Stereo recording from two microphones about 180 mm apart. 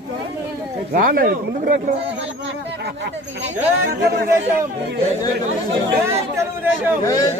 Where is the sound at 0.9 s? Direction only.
50° right (ahead or behind).